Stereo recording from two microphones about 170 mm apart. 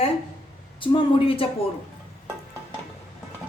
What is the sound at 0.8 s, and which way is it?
Speech, 30° left (ahead or behind).